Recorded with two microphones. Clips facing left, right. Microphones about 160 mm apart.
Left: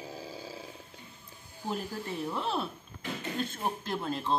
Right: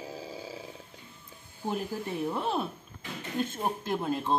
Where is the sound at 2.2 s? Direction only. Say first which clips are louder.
Right 2 dB; 15° right (ahead or behind).